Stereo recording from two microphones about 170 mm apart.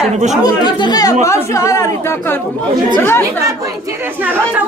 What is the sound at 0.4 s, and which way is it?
Speech, 25° left (ahead or behind).